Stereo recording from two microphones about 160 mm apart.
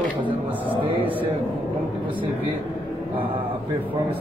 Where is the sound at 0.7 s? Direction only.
35° right (ahead or behind).